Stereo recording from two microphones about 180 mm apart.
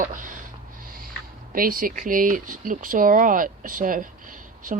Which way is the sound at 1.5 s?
50° right (ahead or behind).